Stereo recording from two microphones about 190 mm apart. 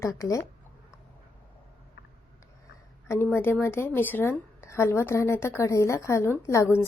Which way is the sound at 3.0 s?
15° left (ahead or behind).